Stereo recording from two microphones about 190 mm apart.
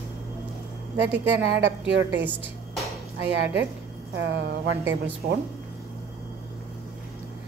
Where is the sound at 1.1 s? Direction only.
75° right (ahead or behind).